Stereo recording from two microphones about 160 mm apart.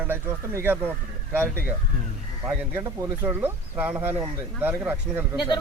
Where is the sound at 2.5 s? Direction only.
10° right (ahead or behind).